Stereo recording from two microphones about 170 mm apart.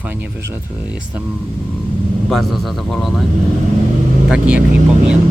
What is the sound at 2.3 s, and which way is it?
Speech, centre (ahead or behind).